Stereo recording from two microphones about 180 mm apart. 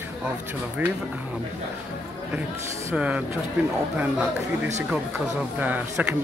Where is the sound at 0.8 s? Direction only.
10° right (ahead or behind).